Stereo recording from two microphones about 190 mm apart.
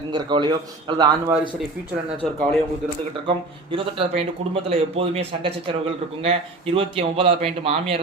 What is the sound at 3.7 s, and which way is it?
A man's voice, 30° right (ahead or behind).